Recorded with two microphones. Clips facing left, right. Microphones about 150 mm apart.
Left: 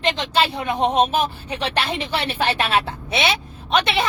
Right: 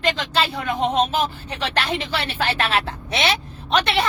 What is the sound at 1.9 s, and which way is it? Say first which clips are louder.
Speech: left 1 dB; 30° left (ahead or behind).